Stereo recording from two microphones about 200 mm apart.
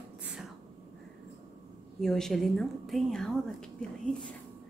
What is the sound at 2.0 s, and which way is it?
Speech, centre (ahead or behind).